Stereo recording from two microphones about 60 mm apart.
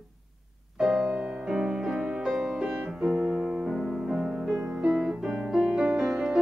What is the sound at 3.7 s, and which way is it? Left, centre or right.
Music, centre.